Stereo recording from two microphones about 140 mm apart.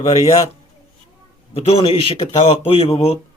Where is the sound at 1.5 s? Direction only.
40° left (ahead or behind).